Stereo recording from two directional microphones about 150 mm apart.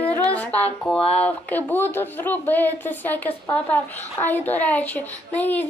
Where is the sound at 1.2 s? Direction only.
10° left (ahead or behind).